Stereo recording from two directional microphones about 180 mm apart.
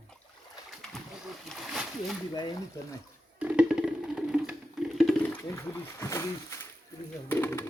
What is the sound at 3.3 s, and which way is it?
Wood block, 5° right (ahead or behind).